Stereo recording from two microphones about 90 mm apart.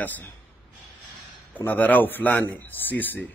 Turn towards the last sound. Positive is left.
turn(degrees=20)  # may be behind; listen again after turning